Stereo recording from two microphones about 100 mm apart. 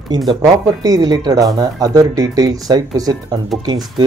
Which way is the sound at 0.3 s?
35° right (ahead or behind).